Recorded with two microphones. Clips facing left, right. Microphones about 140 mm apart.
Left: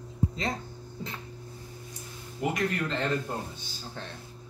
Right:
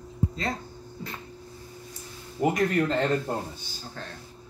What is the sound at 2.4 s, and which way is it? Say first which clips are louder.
Speech: right 6 dB; 40° right (ahead or behind).